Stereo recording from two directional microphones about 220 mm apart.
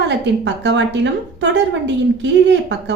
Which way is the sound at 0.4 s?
55° right (ahead or behind).